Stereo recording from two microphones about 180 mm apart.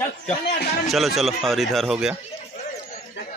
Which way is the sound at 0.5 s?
60° left (ahead or behind).